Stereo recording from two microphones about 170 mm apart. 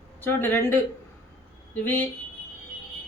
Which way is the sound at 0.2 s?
10° left (ahead or behind).